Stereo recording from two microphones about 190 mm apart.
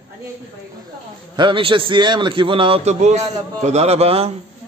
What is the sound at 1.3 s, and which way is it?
A man's voice, 25° right (ahead or behind).